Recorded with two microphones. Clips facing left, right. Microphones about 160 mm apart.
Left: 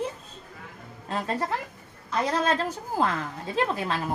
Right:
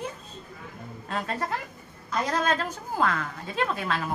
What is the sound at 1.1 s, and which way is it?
Speech, 35° left (ahead or behind).